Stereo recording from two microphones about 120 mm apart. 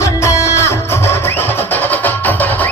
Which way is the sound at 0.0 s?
25° left (ahead or behind).